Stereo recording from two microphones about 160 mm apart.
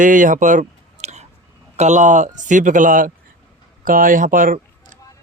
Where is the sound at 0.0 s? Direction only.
55° right (ahead or behind).